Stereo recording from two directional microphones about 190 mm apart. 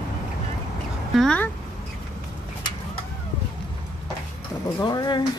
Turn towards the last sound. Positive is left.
turn(degrees=20)  # may be behind; listen again after turning